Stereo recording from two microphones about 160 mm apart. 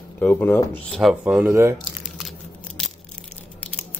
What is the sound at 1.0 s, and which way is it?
Speech, 5° right (ahead or behind).